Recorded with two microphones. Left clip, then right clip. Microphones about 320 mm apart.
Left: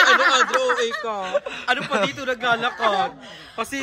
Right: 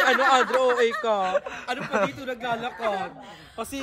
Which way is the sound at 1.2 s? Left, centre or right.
Centre.